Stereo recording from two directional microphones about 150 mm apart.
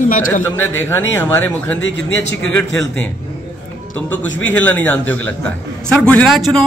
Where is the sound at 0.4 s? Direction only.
15° left (ahead or behind).